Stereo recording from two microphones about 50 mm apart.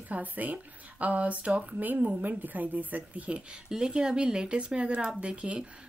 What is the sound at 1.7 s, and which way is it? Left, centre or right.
Speech, right.